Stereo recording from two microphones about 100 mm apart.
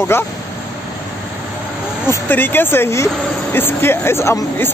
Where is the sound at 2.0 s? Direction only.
20° left (ahead or behind).